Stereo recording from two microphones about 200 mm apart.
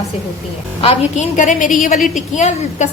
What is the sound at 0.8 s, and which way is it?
A woman's voice, 30° left (ahead or behind).